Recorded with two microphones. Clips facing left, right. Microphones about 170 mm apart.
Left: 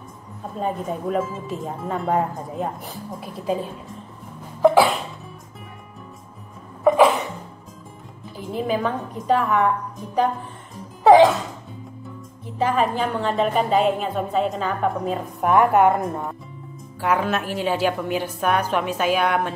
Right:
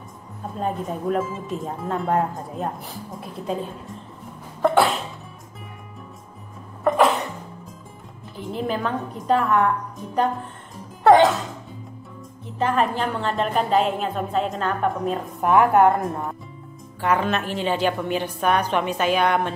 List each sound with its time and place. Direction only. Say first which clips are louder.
0.6 s a woman's voice: left 1 dB; centre (ahead or behind)
4.6 s cough: left 3 dB; centre (ahead or behind)
6.8 s cough: left 3 dB; centre (ahead or behind)
8.4 s a woman's voice: left 2 dB; centre (ahead or behind)
11.1 s music: left 2 dB; centre (ahead or behind)
12.5 s a woman's voice: left 1 dB; 5° left (ahead or behind)